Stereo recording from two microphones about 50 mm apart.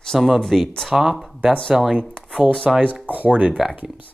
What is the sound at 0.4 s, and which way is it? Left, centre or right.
Speech, centre.